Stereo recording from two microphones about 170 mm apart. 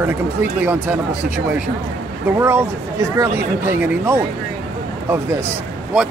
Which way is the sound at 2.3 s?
15° right (ahead or behind).